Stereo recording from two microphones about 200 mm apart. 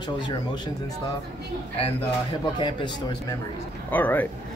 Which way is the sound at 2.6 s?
20° left (ahead or behind).